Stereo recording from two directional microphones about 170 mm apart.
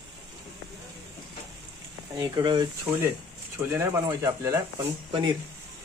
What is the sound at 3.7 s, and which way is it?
Speech, 15° right (ahead or behind).